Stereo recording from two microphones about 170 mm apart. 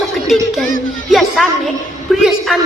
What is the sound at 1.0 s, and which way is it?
Music, centre (ahead or behind).